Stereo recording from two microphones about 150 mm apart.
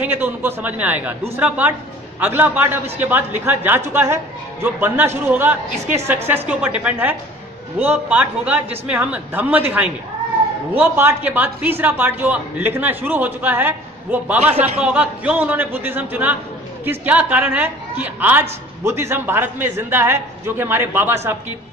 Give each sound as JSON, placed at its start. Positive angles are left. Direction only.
{"t": 0.0, "sound": "a woman's voice", "side_deg": -10}